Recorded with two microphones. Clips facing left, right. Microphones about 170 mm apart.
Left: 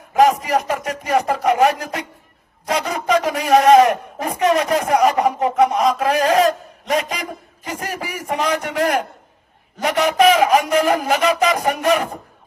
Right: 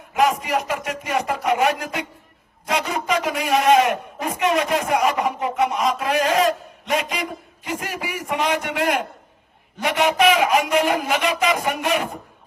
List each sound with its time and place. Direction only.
0.1 s a man's voice: 40° left (ahead or behind)